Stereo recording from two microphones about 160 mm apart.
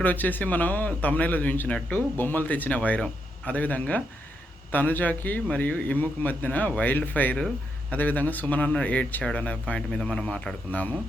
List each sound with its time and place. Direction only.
0.0 s a man's voice: 10° left (ahead or behind)